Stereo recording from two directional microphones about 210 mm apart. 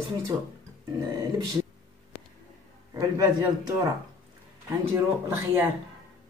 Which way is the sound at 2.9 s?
15° right (ahead or behind).